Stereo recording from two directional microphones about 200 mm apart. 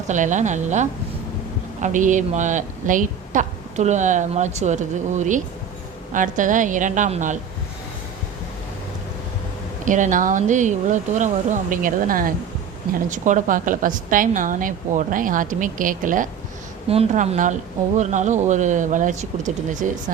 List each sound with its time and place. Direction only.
0.1 s a woman's voice: 40° right (ahead or behind)
9.8 s a woman's voice: 40° right (ahead or behind)
16.9 s a woman's voice: 30° right (ahead or behind)